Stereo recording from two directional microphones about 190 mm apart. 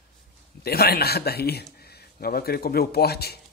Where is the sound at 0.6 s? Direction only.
55° left (ahead or behind).